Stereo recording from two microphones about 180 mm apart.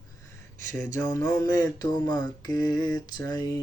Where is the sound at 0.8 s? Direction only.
15° left (ahead or behind).